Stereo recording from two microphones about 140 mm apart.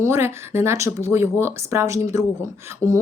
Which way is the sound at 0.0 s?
20° right (ahead or behind).